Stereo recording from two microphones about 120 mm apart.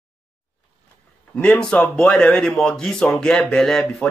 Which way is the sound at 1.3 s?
10° left (ahead or behind).